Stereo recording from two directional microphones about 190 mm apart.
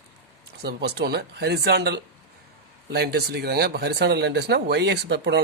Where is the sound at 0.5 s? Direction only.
60° right (ahead or behind).